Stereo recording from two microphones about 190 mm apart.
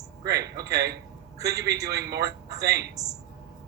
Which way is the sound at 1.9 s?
60° right (ahead or behind).